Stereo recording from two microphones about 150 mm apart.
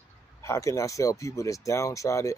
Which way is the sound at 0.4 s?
20° left (ahead or behind).